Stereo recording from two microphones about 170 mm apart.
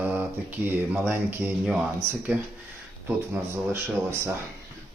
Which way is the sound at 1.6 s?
10° right (ahead or behind).